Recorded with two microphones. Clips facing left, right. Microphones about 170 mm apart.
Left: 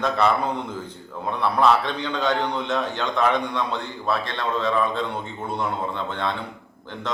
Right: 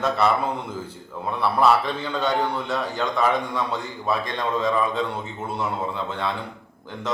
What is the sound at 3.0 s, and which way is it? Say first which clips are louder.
Mantra: right 1 dB; 5° right (ahead or behind).